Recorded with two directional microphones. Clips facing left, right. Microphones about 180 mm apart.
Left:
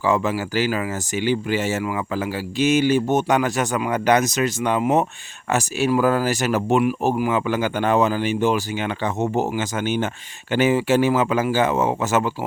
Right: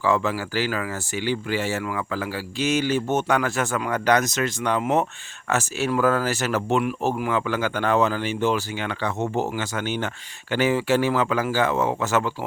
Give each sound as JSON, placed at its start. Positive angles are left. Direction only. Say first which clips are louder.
{"t": 0.0, "sound": "speech", "louder": "left 2 dB", "side_deg": 15}